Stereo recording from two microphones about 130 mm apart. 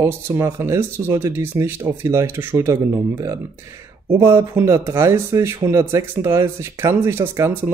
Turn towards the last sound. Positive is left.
turn(degrees=-20)  # may be behind; listen again after turning